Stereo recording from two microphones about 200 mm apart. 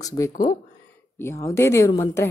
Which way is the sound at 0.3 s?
40° left (ahead or behind).